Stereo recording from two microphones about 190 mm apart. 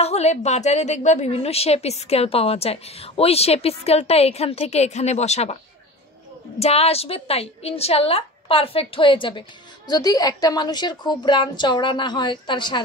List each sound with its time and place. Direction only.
0.0 s a woman's voice: 35° left (ahead or behind)
6.6 s a woman's voice: 30° left (ahead or behind)